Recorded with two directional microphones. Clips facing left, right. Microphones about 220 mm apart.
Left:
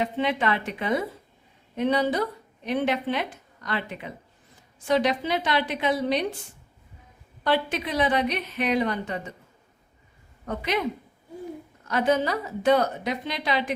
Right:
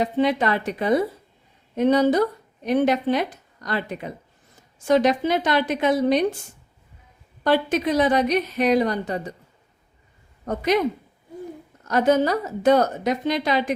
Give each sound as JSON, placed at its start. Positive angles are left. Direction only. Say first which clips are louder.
{"t": 0.0, "sound": "a woman's voice", "louder": "right 5 dB", "side_deg": -40}
{"t": 7.4, "sound": "a woman's voice", "louder": "right 5 dB", "side_deg": -45}
{"t": 10.4, "sound": "a woman's voice", "louder": "right 6 dB", "side_deg": -40}
{"t": 11.9, "sound": "a woman's voice", "louder": "right 5 dB", "side_deg": -40}